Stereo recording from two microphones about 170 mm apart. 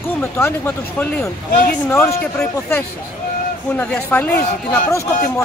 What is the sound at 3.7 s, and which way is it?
Speech, 10° left (ahead or behind).